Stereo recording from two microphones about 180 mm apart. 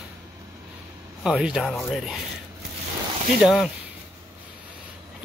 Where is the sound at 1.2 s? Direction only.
5° right (ahead or behind).